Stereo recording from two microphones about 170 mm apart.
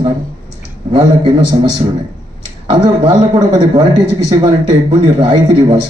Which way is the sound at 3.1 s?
25° right (ahead or behind).